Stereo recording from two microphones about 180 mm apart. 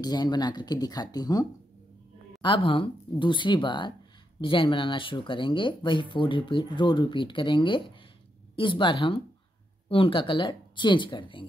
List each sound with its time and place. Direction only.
0.0 s speech: 20° left (ahead or behind)